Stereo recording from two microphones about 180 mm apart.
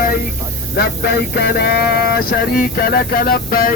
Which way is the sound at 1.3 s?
60° left (ahead or behind).